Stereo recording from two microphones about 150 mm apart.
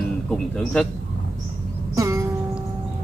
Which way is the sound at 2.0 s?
20° right (ahead or behind).